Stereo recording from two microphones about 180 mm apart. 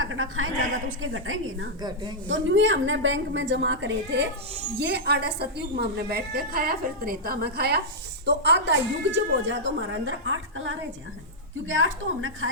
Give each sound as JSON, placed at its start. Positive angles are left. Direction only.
{"t": 0.0, "sound": "speech", "side_deg": -90}
{"t": 1.8, "sound": "a woman's voice", "side_deg": -25}
{"t": 2.2, "sound": "speech", "side_deg": -90}
{"t": 4.8, "sound": "a woman's voice", "side_deg": -65}
{"t": 8.4, "sound": "speech", "side_deg": -75}